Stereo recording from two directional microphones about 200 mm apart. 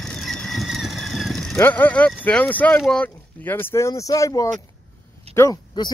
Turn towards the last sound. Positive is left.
turn(degrees=20)  # may be behind; listen again after turning